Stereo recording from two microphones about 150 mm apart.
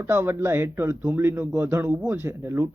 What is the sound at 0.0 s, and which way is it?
A man's voice, 15° right (ahead or behind).